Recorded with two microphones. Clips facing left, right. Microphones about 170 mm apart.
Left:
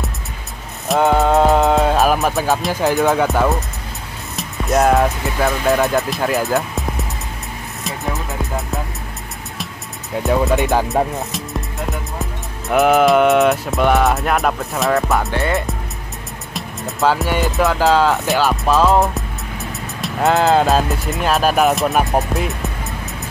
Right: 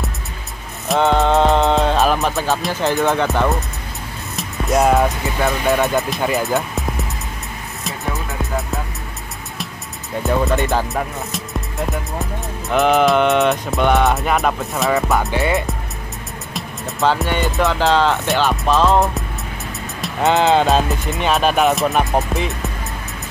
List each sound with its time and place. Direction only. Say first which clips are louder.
0.8 s music: left 1 dB; centre (ahead or behind)
4.4 s speech: even; centre (ahead or behind)
8.4 s music: even; centre (ahead or behind)
10.1 s music: left 2 dB; centre (ahead or behind)
10.6 s speech: left 2 dB; 15° left (ahead or behind)
11.9 s music: right 2 dB; centre (ahead or behind)